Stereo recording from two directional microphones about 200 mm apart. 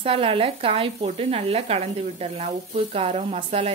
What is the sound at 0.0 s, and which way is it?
Speech, 30° right (ahead or behind).